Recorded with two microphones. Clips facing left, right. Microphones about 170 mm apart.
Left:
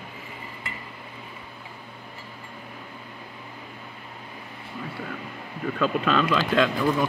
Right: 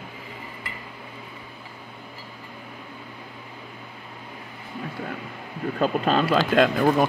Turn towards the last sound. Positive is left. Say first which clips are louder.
# right 4 dB
turn(degrees=-60)  # may be behind; listen again after turning